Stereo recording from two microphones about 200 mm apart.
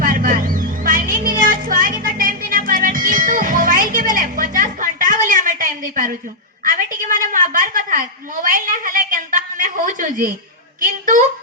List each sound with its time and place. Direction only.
0.0 s music: 45° right (ahead or behind)
6.7 s a woman's voice: 40° right (ahead or behind)